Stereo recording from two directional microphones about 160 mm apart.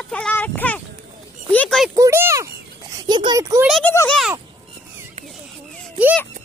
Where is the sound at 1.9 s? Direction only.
15° right (ahead or behind).